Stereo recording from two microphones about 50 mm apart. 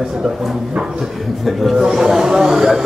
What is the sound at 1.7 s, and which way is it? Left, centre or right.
A man's voice, centre.